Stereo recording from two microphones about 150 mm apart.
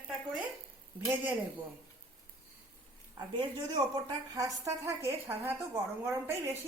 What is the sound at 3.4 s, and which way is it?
A woman's voice, 30° right (ahead or behind).